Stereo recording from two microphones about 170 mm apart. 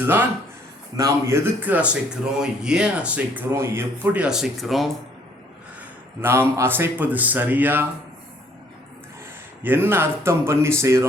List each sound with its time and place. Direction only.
0.0 s speech: 10° right (ahead or behind)
6.2 s speech: 15° right (ahead or behind)
9.6 s speech: 10° right (ahead or behind)